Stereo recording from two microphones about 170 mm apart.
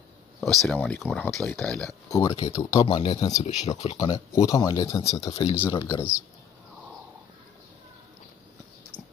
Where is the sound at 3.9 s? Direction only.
25° left (ahead or behind).